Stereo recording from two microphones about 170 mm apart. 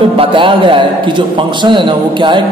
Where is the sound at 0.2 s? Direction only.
30° right (ahead or behind).